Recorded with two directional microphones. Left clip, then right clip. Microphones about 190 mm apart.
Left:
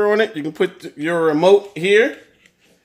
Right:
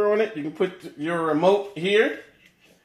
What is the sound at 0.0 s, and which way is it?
Speech, 45° left (ahead or behind).